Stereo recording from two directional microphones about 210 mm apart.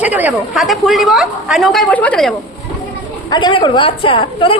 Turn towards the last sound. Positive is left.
turn(degrees=25)  # may be behind; listen again after turning